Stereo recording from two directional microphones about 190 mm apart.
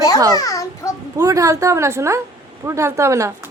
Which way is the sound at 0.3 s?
15° left (ahead or behind).